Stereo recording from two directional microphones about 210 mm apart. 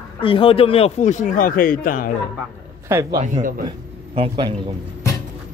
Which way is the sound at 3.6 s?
25° right (ahead or behind).